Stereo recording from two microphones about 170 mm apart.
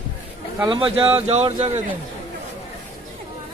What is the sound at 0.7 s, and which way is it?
Speech, 30° right (ahead or behind).